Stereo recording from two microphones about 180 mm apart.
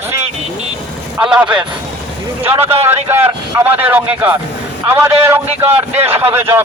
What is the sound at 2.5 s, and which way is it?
Speech, 35° right (ahead or behind).